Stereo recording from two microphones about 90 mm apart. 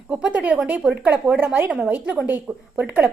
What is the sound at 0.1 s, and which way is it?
A woman's voice, 15° right (ahead or behind).